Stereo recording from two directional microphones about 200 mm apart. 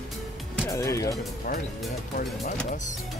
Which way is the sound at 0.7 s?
15° left (ahead or behind).